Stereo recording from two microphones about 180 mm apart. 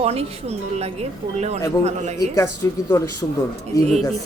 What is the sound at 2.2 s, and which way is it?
Speech, 20° left (ahead or behind).